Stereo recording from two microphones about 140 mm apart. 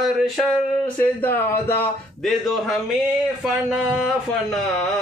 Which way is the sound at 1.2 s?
15° left (ahead or behind).